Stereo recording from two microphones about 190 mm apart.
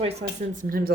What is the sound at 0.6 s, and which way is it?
Speech, 50° right (ahead or behind).